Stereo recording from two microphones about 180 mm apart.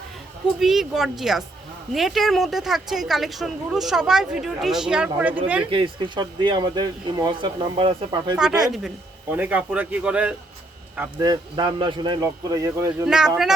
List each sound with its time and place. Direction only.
0.6 s a woman's voice: centre (ahead or behind)
5.7 s speech: 25° right (ahead or behind)
8.6 s a woman's voice: centre (ahead or behind)
11.3 s speech: 25° right (ahead or behind)
13.1 s a woman's voice: 5° right (ahead or behind)